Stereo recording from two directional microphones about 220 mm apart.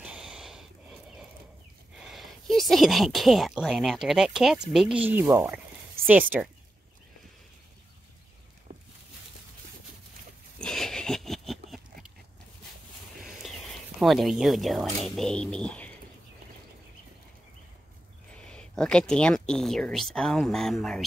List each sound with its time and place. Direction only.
0.0 s snort: 5° right (ahead or behind)
2.0 s speech: centre (ahead or behind)
8.7 s boat: 40° right (ahead or behind)
10.6 s a sound: centre (ahead or behind)
13.4 s speech: centre (ahead or behind)
18.3 s speech: 5° left (ahead or behind)